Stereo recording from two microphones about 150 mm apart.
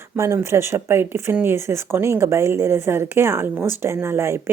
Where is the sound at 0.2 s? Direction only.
20° right (ahead or behind).